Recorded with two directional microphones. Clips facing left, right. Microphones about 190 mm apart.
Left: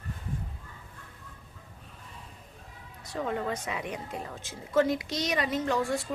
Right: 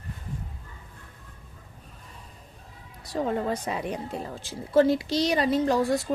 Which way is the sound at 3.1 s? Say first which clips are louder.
Right 4 dB; 35° right (ahead or behind).